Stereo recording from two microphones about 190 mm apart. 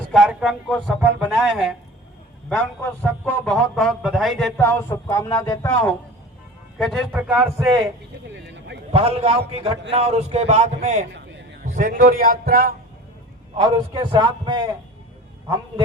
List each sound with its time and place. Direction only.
0.1 s a man's voice: 5° right (ahead or behind); by 5.9 s 15° left (ahead or behind)
6.7 s speech: centre (ahead or behind)
8.3 s speech: 65° right (ahead or behind)
8.9 s speech: 30° right (ahead or behind)
11.1 s a sound: 70° right (ahead or behind)
11.6 s a man's voice: 40° right (ahead or behind)
13.6 s a man's voice: 25° right (ahead or behind)